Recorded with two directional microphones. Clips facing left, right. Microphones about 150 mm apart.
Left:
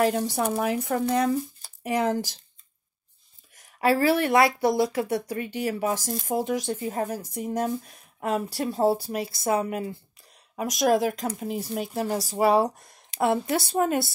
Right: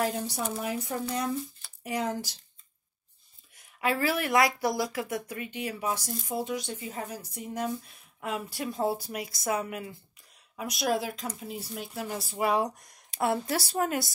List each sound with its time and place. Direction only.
0.0 s speech: 70° left (ahead or behind)
3.5 s speech: 35° left (ahead or behind)
10.5 s speech: 45° left (ahead or behind); by 11.9 s 60° left (ahead or behind)
11.9 s speech: 40° left (ahead or behind)